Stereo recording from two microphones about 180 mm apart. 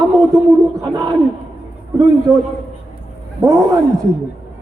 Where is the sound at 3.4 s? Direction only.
15° right (ahead or behind).